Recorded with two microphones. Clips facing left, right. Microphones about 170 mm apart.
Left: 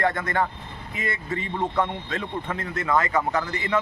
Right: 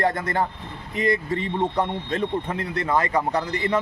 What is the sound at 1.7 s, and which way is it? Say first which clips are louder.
A man's voice: right 2 dB; 20° right (ahead or behind).